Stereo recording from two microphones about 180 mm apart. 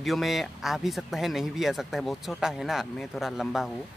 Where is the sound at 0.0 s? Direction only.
Centre (ahead or behind).